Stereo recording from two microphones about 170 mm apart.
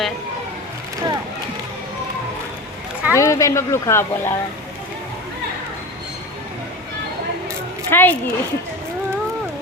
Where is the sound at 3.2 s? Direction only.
20° left (ahead or behind).